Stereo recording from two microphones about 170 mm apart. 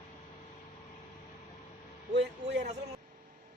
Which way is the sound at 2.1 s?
90° right.